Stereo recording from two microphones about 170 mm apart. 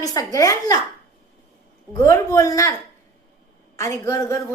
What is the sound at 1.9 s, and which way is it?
Speech, 20° left (ahead or behind).